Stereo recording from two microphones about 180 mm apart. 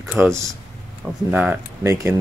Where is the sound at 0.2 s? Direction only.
15° right (ahead or behind).